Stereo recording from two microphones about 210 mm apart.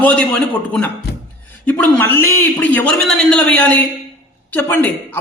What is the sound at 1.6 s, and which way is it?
Speech, 10° left (ahead or behind).